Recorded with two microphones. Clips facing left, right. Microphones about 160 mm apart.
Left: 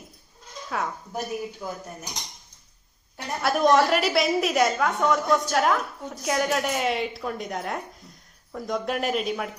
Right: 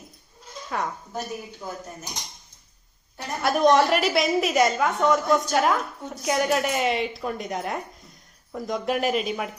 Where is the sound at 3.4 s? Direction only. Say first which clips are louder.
Right 1 dB; centre (ahead or behind).